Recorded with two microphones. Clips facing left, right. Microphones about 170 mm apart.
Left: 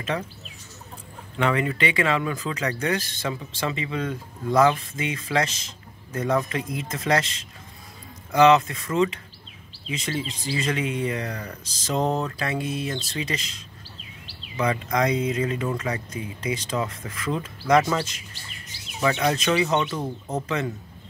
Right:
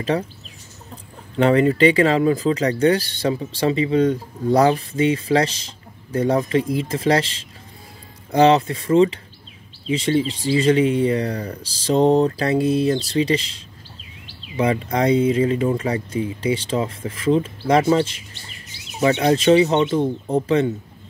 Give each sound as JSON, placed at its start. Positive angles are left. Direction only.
{"t": 1.3, "sound": "speech", "side_deg": -35}
{"t": 14.6, "sound": "speech", "side_deg": -30}